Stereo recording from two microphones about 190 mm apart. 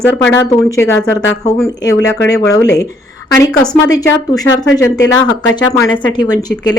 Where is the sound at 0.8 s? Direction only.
15° left (ahead or behind).